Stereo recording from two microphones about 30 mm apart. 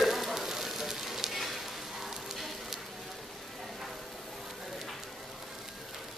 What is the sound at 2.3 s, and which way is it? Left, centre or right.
Clip-clop, centre.